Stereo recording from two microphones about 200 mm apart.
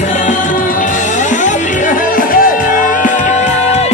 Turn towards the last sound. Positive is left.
turn(degrees=40)  # may be behind; listen again after turning